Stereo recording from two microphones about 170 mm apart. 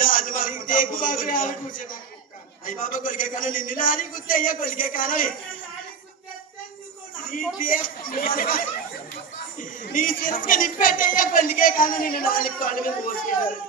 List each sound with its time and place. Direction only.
0.0 s a man's voice: 55° left (ahead or behind)
7.5 s speech: 55° left (ahead or behind)